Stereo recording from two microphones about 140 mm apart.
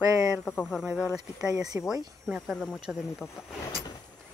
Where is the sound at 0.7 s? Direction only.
5° right (ahead or behind).